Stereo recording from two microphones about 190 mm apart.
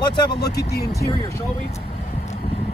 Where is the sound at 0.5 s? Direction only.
60° left (ahead or behind).